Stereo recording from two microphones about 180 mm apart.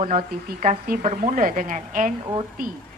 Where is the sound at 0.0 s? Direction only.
45° right (ahead or behind).